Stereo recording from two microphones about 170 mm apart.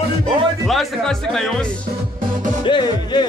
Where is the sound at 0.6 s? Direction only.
Centre (ahead or behind).